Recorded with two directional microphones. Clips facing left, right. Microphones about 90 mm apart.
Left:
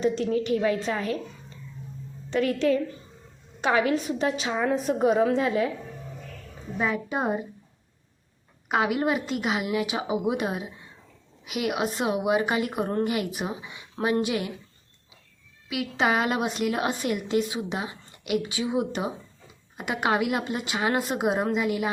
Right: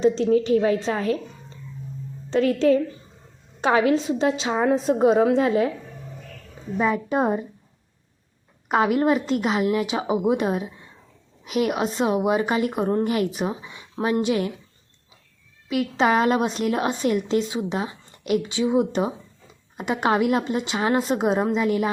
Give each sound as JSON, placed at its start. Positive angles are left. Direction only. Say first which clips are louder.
{"t": 0.0, "sound": "a woman's voice", "louder": "right 6 dB", "side_deg": -25}
{"t": 6.9, "sound": "a woman's voice", "louder": "right 6 dB", "side_deg": -45}
{"t": 8.7, "sound": "a woman's voice", "louder": "right 5 dB", "side_deg": -45}
{"t": 15.7, "sound": "a woman's voice", "louder": "right 5 dB", "side_deg": -40}
{"t": 18.4, "sound": "a woman's voice", "louder": "right 6 dB", "side_deg": -25}